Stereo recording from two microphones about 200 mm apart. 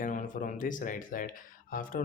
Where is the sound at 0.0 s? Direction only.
40° left (ahead or behind).